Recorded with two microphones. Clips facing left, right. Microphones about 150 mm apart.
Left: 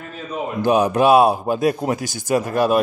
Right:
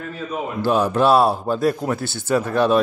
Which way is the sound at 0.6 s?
15° left (ahead or behind).